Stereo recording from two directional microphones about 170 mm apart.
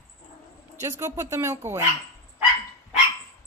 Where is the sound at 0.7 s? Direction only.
15° right (ahead or behind).